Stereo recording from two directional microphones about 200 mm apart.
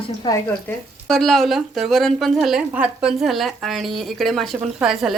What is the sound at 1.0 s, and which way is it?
A woman's voice, centre (ahead or behind).